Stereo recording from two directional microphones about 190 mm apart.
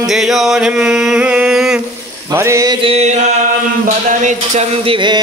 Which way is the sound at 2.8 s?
35° right (ahead or behind).